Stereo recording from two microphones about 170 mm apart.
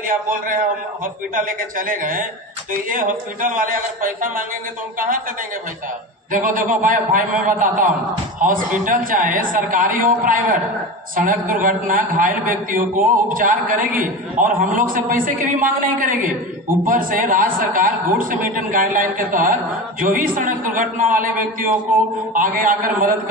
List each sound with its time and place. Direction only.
0.1 s a man's voice: 50° right (ahead or behind)
6.4 s a man's voice: 50° right (ahead or behind)